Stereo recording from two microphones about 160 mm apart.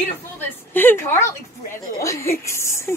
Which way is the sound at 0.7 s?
15° left (ahead or behind).